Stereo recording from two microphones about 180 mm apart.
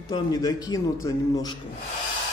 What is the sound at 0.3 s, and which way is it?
A man's voice, 20° left (ahead or behind).